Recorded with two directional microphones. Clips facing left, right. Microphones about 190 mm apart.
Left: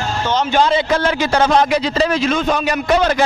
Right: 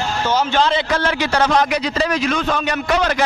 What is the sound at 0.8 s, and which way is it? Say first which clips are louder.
A man's voice: left 3 dB; 30° left (ahead or behind).